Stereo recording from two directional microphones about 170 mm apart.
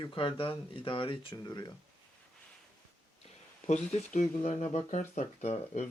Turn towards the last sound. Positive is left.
turn(degrees=40)  # may be behind; listen again after turning